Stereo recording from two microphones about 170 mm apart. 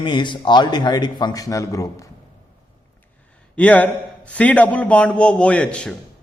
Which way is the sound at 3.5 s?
10° left (ahead or behind).